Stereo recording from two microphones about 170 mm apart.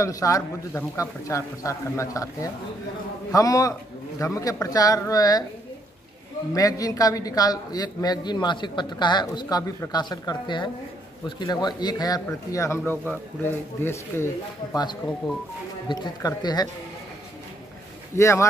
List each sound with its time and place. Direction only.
0.0 s a man's voice: 20° left (ahead or behind)
6.5 s a man's voice: 20° left (ahead or behind)
15.9 s a man's voice: 25° left (ahead or behind)
18.1 s speech: 15° left (ahead or behind)